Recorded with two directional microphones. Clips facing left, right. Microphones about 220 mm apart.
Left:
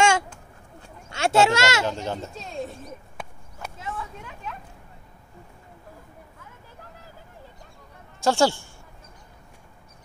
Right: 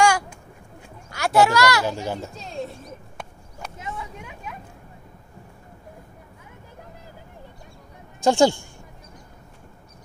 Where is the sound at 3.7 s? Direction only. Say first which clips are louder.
Even; 15° right (ahead or behind).